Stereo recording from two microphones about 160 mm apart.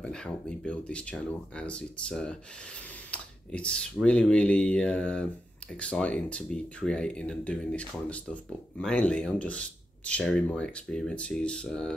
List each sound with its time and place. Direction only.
0.0 s speech: 5° left (ahead or behind)